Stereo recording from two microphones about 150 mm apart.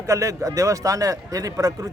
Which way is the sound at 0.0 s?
20° right (ahead or behind).